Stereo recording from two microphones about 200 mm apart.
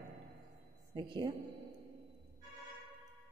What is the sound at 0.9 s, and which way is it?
Speech, 25° right (ahead or behind).